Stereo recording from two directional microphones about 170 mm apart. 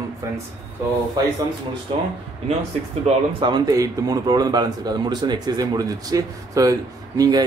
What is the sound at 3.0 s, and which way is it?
A man's voice, 25° right (ahead or behind).